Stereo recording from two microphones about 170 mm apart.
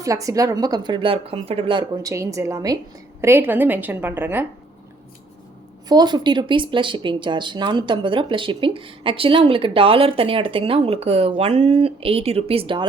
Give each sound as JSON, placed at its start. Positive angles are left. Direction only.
{"t": 0.0, "sound": "a woman's voice", "side_deg": -20}
{"t": 5.9, "sound": "speech", "side_deg": -25}